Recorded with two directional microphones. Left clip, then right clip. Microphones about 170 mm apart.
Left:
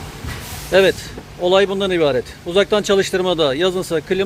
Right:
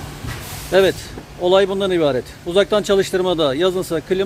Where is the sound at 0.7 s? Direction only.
10° right (ahead or behind).